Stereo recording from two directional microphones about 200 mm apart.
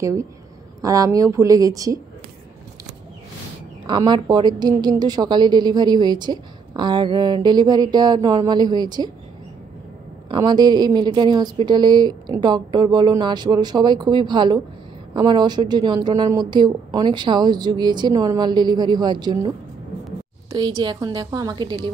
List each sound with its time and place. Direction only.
0.0 s speech: 15° right (ahead or behind)
3.8 s a woman's voice: 25° right (ahead or behind)
10.2 s a woman's voice: 20° right (ahead or behind)
20.5 s a woman's voice: 20° right (ahead or behind)